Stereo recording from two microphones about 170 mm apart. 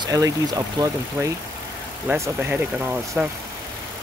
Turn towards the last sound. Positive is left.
turn(degrees=-10)  # may be behind; listen again after turning